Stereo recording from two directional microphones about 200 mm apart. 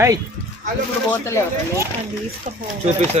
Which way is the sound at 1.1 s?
15° left (ahead or behind).